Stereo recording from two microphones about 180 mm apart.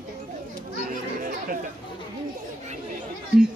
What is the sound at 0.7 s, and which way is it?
Chatter, 50° right (ahead or behind).